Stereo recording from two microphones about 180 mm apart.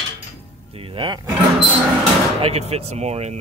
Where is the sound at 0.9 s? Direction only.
25° right (ahead or behind).